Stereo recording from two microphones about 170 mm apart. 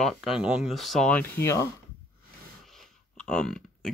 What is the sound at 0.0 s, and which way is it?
Speech, centre (ahead or behind).